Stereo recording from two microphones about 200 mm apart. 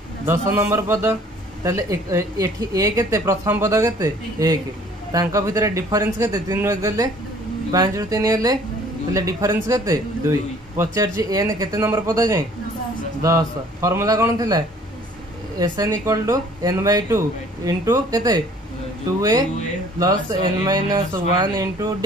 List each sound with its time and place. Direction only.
0.3 s a woman's voice: 15° right (ahead or behind)
15.6 s a woman's voice: 20° right (ahead or behind)
20.0 s speech: 20° right (ahead or behind)